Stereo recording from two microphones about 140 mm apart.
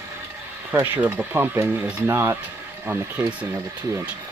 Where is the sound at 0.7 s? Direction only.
15° right (ahead or behind).